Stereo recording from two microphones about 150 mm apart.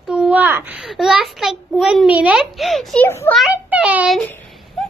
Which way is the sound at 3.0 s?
15° left (ahead or behind).